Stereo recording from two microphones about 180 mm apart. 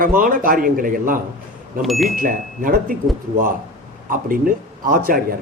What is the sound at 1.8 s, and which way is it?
Speech, centre (ahead or behind).